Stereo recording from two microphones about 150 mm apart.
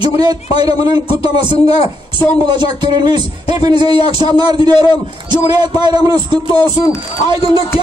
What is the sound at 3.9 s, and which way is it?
Speech, 40° left (ahead or behind).